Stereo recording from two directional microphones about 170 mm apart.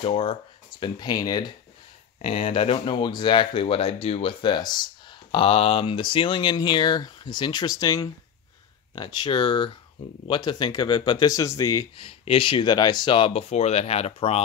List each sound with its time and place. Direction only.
0.0 s speech: 35° left (ahead or behind)
2.2 s speech: 35° left (ahead or behind); by 11.9 s 20° left (ahead or behind)
12.0 s speech: 30° left (ahead or behind)